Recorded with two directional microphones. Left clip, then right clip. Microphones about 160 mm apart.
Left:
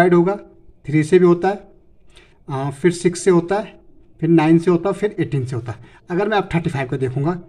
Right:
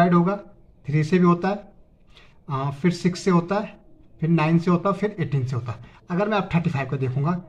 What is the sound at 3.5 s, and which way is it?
A man's voice, 35° left (ahead or behind).